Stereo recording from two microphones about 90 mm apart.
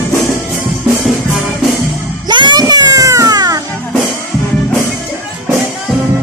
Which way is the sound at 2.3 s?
60° right (ahead or behind).